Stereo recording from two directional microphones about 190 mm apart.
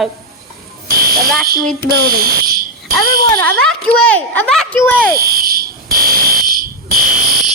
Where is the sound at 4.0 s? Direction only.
5° left (ahead or behind).